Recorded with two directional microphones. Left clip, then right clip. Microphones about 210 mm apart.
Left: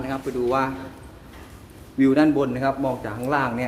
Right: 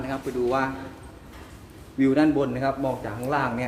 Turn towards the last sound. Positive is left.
turn(degrees=10)  # may be behind; listen again after turning